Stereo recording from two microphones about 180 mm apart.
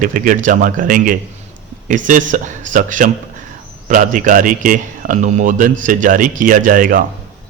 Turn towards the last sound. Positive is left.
turn(degrees=-50)  # may be behind; listen again after turning